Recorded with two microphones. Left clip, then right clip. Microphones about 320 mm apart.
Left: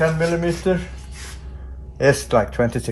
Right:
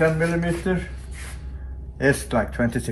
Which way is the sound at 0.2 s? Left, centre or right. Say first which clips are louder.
Left 3 dB; centre.